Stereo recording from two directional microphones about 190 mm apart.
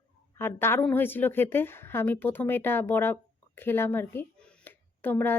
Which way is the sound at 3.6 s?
10° left (ahead or behind).